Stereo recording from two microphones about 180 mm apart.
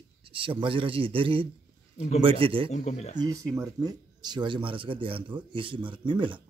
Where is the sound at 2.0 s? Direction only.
40° left (ahead or behind).